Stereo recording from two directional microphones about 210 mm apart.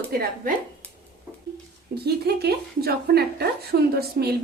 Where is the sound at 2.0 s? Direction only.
50° right (ahead or behind).